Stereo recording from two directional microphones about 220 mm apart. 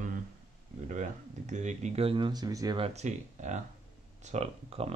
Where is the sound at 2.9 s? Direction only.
35° right (ahead or behind).